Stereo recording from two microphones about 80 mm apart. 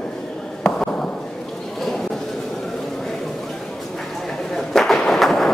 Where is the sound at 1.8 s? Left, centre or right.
Centre.